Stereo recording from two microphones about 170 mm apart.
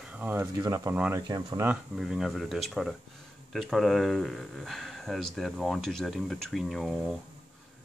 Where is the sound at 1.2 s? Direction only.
25° right (ahead or behind).